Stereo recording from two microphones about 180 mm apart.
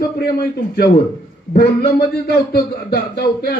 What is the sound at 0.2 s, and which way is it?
A man's voice, 55° left (ahead or behind).